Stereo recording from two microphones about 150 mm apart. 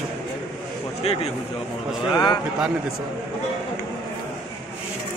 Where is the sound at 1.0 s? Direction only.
40° left (ahead or behind).